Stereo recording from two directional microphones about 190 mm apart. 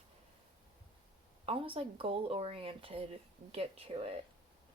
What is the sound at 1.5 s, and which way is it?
Speech, 30° right (ahead or behind).